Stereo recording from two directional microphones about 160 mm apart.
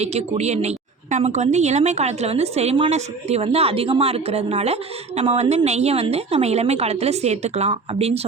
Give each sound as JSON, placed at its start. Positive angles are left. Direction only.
{"t": 0.0, "sound": "a woman's voice", "side_deg": -40}